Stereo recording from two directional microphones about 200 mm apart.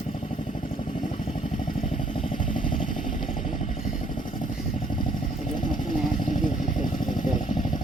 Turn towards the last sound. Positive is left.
turn(degrees=40)  # may be behind; listen again after turning